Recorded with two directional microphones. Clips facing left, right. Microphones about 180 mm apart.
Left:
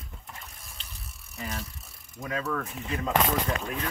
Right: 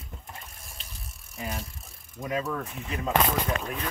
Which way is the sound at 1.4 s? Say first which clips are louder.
Right 1 dB; 10° right (ahead or behind).